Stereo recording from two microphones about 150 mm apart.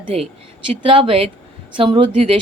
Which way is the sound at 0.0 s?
45° right (ahead or behind).